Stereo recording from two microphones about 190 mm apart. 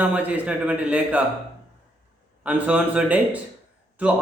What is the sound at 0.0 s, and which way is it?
Speech, 5° right (ahead or behind).